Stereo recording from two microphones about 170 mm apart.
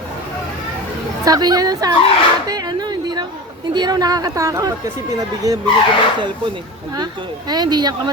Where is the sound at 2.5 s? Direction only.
25° right (ahead or behind).